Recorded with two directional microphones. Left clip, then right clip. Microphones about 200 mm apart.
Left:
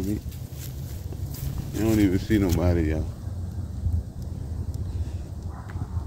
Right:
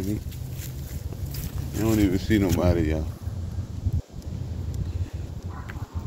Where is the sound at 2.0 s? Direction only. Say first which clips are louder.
Left 1 dB; 15° left (ahead or behind).